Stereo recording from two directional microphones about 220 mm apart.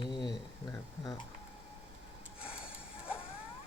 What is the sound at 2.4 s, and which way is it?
Snort, 5° right (ahead or behind).